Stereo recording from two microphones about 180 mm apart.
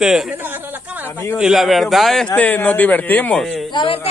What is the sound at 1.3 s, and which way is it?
Speech, centre (ahead or behind).